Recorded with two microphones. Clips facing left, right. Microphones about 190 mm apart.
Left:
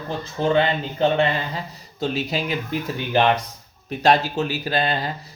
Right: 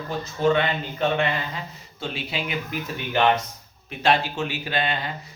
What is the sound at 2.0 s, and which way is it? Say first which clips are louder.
Speech: left 6 dB; 40° left (ahead or behind).